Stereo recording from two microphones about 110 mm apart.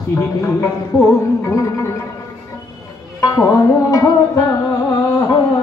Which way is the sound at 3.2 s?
30° left (ahead or behind).